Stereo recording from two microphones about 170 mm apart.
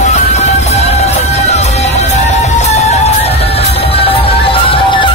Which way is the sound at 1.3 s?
40° left (ahead or behind).